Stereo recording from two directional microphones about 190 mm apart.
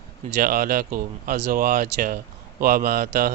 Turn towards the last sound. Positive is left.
turn(degrees=-50)  # may be behind; listen again after turning